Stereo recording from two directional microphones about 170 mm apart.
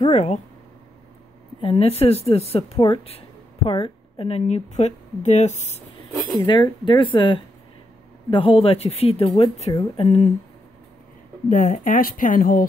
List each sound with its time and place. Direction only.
0.1 s a woman's voice: 40° left (ahead or behind)
1.6 s a woman's voice: 35° left (ahead or behind)
6.1 s speech: centre (ahead or behind)
6.8 s a woman's voice: 30° left (ahead or behind)
11.4 s speech: 50° left (ahead or behind)